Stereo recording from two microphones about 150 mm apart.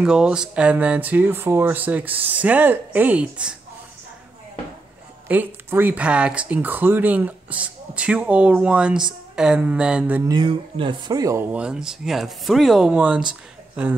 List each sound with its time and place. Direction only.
0.0 s speech: 5° right (ahead or behind)
5.3 s speech: 10° right (ahead or behind)
10.2 s speech: 30° right (ahead or behind)
11.5 s speech: 5° right (ahead or behind)